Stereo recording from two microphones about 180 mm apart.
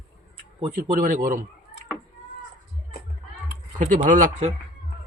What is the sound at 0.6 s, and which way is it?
Speech, 45° right (ahead or behind).